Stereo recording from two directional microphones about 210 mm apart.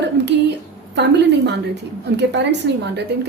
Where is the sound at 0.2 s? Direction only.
55° right (ahead or behind).